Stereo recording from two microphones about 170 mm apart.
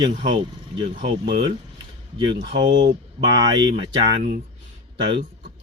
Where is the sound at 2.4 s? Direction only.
90° right.